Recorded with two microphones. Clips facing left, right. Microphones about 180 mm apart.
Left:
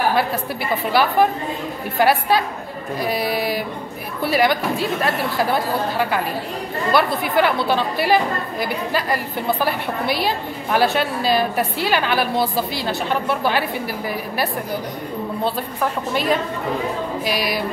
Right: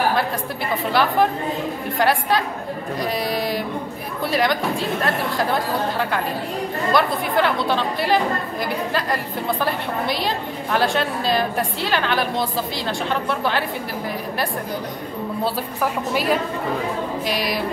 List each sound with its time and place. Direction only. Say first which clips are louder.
2.0 s a woman's voice: left 3 dB; 5° left (ahead or behind)
15.4 s a woman's voice: even; 5° right (ahead or behind)